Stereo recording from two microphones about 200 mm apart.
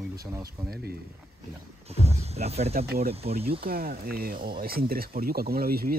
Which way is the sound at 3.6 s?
50° right (ahead or behind).